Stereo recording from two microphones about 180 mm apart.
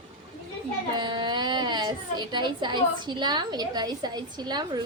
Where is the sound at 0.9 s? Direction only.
25° right (ahead or behind).